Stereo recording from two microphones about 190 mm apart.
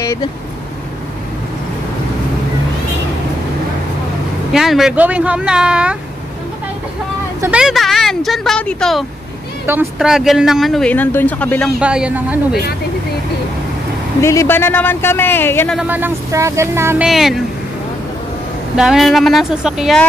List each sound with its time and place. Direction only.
0.0 s vehicle: 15° left (ahead or behind)
4.5 s speech: centre (ahead or behind)
7.4 s speech: 5° right (ahead or behind)
11.8 s speech: 5° right (ahead or behind)
14.2 s speech: 15° left (ahead or behind)
15.7 s speech: 5° right (ahead or behind)
17.1 s speech: centre (ahead or behind)
18.8 s speech: centre (ahead or behind)